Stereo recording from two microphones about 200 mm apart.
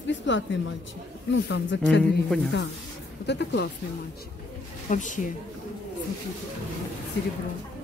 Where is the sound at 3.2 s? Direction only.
60° left (ahead or behind).